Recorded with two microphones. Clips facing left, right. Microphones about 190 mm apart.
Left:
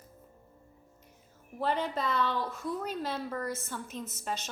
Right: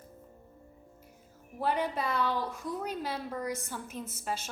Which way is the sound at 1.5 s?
10° right (ahead or behind).